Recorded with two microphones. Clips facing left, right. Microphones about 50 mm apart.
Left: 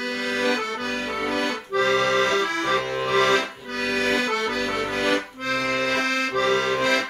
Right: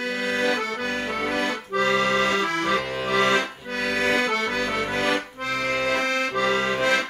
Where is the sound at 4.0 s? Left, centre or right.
Right.